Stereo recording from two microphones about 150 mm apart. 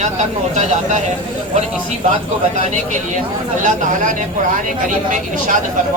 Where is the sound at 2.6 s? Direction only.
55° right (ahead or behind).